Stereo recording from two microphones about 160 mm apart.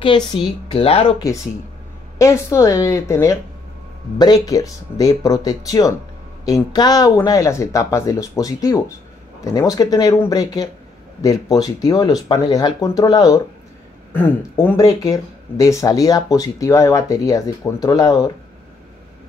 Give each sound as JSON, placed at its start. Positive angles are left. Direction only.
{"t": 0.0, "sound": "speech", "side_deg": 30}
{"t": 2.1, "sound": "speech", "side_deg": 20}
{"t": 14.1, "sound": "speech", "side_deg": 10}
{"t": 14.8, "sound": "speech", "side_deg": 20}